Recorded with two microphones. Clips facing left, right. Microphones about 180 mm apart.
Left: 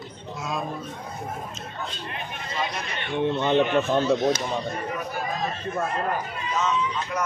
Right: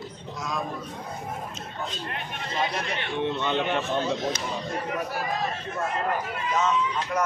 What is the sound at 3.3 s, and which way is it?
A man's voice, 45° left (ahead or behind).